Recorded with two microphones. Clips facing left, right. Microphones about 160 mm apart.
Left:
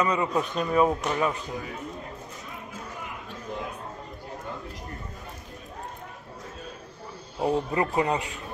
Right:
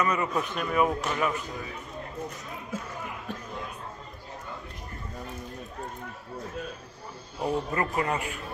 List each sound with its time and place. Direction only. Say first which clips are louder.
0.0 s speech: left 2 dB; 15° left (ahead or behind)
7.3 s speech: left 3 dB; 20° left (ahead or behind)